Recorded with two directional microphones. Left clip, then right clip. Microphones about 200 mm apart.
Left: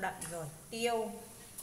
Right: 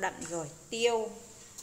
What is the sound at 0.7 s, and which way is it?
Speech, 40° right (ahead or behind).